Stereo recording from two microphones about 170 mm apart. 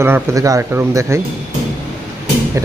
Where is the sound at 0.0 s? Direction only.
15° right (ahead or behind).